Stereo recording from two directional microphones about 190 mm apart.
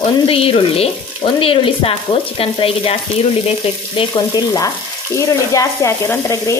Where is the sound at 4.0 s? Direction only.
20° left (ahead or behind).